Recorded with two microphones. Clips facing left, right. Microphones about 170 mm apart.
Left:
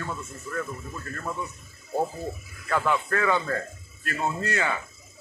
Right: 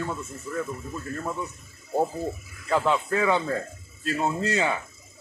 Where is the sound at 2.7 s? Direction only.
20° right (ahead or behind).